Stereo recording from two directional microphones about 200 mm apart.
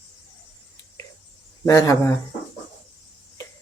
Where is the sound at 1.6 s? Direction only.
15° left (ahead or behind).